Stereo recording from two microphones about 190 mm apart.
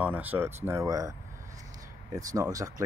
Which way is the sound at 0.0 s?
10° right (ahead or behind).